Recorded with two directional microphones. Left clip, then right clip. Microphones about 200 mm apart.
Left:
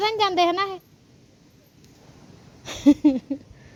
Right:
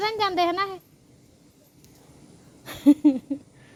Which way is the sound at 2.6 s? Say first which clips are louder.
Left 1 dB; 15° left (ahead or behind).